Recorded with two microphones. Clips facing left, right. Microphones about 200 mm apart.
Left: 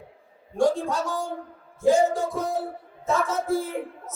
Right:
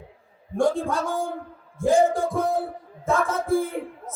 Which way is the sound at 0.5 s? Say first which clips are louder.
Even; 55° right (ahead or behind).